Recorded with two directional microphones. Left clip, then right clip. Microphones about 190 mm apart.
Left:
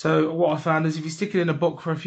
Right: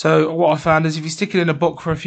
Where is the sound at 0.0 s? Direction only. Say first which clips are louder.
Right 6 dB; 40° right (ahead or behind).